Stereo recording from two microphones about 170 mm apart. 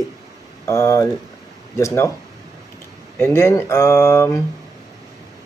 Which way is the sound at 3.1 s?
15° left (ahead or behind).